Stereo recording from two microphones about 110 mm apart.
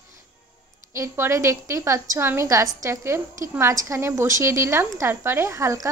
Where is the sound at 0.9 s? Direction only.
25° right (ahead or behind).